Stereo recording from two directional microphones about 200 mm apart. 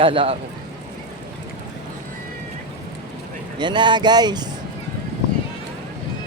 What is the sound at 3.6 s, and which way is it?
Speech, 25° right (ahead or behind).